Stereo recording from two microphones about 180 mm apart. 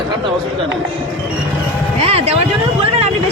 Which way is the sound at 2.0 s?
35° right (ahead or behind).